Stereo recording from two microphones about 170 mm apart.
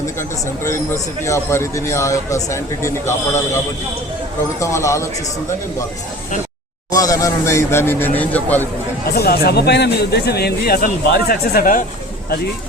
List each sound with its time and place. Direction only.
0.2 s a man's voice: 15° left (ahead or behind)
4.6 s a man's voice: 15° left (ahead or behind)
6.9 s a man's voice: 20° left (ahead or behind)
9.1 s speech: 65° left (ahead or behind)